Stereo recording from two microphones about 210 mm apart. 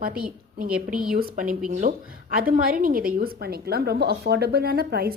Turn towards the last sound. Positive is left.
turn(degrees=-50)  # may be behind; listen again after turning